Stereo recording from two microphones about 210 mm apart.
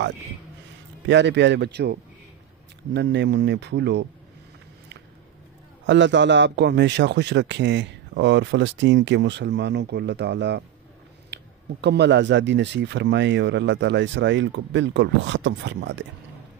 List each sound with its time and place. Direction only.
1.0 s a man's voice: 55° right (ahead or behind)
5.9 s a man's voice: 60° right (ahead or behind)
11.3 s a sound: 55° right (ahead or behind)
11.8 s a man's voice: 55° right (ahead or behind)